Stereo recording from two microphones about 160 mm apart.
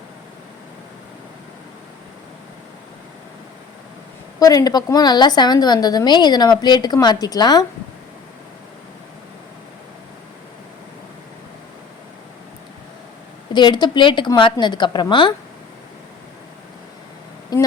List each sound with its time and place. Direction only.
4.4 s a woman's voice: 25° left (ahead or behind)
13.5 s a woman's voice: 30° left (ahead or behind)
17.5 s a woman's voice: 25° left (ahead or behind)